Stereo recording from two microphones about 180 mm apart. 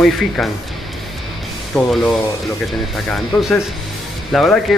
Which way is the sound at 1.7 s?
Centre (ahead or behind).